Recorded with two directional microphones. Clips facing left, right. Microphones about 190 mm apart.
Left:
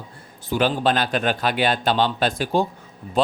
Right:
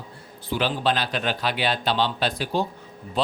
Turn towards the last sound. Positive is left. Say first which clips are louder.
# left 4 dB
turn(degrees=45)  # may be behind; listen again after turning